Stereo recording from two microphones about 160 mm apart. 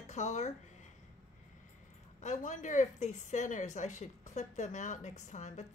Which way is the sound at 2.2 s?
50° left (ahead or behind).